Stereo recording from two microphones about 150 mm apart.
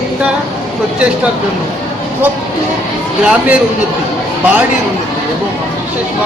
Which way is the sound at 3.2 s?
5° right (ahead or behind).